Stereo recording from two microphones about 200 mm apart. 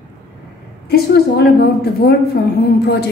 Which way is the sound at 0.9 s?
50° left (ahead or behind).